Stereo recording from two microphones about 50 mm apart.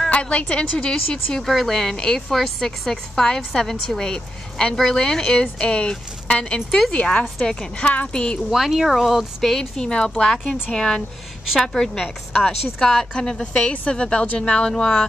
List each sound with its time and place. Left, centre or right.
0.1 s speech: left
1.4 s a woman's voice: centre
7.8 s speech: left
8.5 s a woman's voice: centre
12.3 s speech: left
12.7 s a woman's voice: centre